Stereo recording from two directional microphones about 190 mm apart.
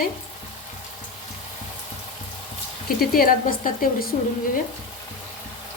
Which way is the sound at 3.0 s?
50° left (ahead or behind).